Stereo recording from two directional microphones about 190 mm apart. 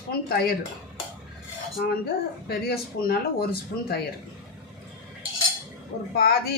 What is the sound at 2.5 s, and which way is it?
Speech, 55° left (ahead or behind).